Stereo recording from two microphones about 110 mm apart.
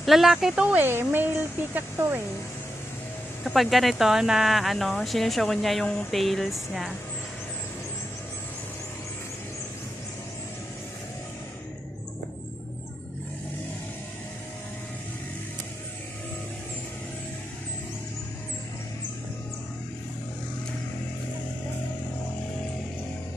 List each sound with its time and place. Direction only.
0.0 s speech: centre (ahead or behind)
0.7 s speech: 20° right (ahead or behind)
3.4 s speech: centre (ahead or behind)